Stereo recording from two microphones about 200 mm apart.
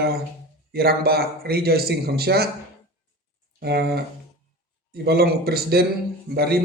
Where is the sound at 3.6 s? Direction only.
55° right (ahead or behind).